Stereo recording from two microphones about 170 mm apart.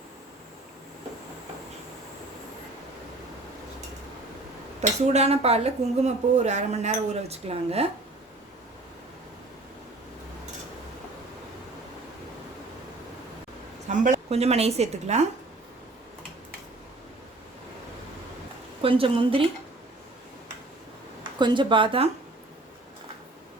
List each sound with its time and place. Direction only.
4.8 s speech: 40° right (ahead or behind)
13.8 s a woman's voice: 45° right (ahead or behind)
18.8 s speech: 30° right (ahead or behind)
21.3 s speech: 25° right (ahead or behind)